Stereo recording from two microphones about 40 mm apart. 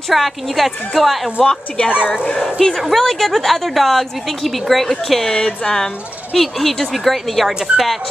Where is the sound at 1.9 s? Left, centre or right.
Left.